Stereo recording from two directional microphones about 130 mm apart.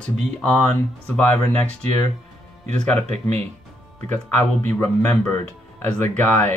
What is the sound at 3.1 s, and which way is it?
Speech, 60° right (ahead or behind).